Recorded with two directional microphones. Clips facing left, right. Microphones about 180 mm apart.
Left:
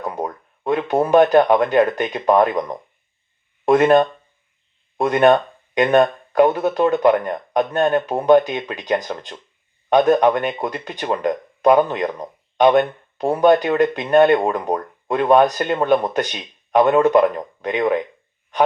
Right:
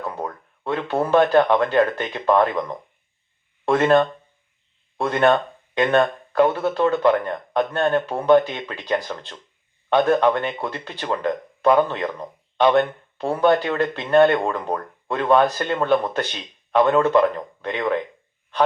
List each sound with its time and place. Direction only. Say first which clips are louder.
0.0 s speech: left 3 dB; 15° left (ahead or behind)